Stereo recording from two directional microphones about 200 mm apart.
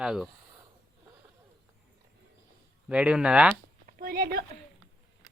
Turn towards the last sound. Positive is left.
turn(degrees=-50)  # may be behind; listen again after turning